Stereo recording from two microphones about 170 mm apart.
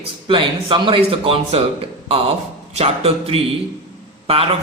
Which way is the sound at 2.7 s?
35° right (ahead or behind).